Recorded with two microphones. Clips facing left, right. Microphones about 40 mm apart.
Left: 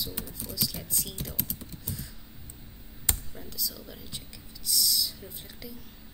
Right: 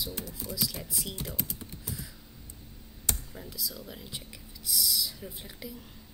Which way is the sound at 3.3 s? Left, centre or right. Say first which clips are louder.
Even; centre.